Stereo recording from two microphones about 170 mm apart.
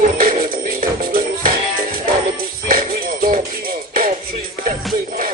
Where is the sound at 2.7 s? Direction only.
55° right (ahead or behind).